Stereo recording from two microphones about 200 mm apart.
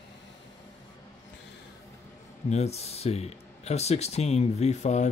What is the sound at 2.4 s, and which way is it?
Speech, 35° left (ahead or behind).